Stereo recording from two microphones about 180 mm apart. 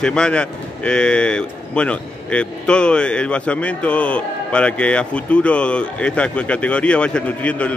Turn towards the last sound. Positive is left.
turn(degrees=5)  # may be behind; listen again after turning